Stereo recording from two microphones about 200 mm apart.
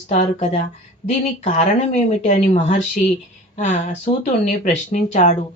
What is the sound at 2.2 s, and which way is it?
A woman's voice, 35° left (ahead or behind).